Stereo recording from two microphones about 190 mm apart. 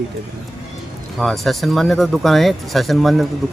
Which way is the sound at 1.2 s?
Centre (ahead or behind).